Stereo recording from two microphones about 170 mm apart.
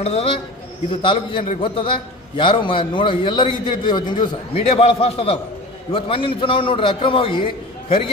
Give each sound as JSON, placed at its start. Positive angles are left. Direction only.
{"t": 0.0, "sound": "a man's voice", "side_deg": 35}